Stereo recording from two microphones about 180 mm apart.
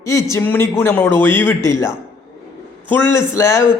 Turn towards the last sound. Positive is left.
turn(degrees=15)  # may be behind; listen again after turning